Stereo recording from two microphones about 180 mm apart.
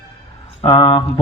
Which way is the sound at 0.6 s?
25° left (ahead or behind).